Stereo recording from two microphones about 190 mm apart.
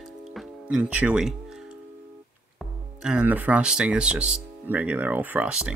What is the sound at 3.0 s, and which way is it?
Speech, 5° right (ahead or behind).